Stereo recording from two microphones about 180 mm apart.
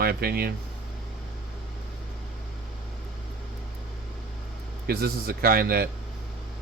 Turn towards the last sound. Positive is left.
turn(degrees=-55)  # may be behind; listen again after turning